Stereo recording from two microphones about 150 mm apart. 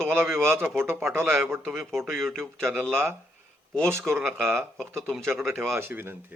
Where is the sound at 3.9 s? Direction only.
15° right (ahead or behind).